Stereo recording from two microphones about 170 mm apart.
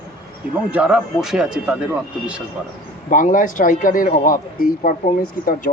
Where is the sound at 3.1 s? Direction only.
50° left (ahead or behind).